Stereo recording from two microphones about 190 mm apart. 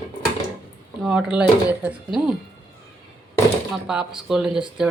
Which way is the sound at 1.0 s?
5° right (ahead or behind).